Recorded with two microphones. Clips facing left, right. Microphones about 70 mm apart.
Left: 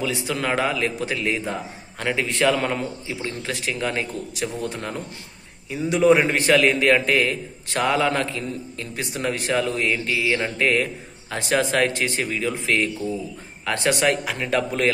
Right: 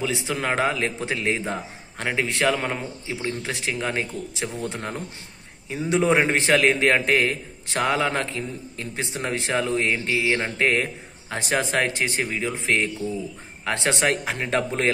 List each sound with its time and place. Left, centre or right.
0.0 s a man's voice: right
2.0 s a man's voice: right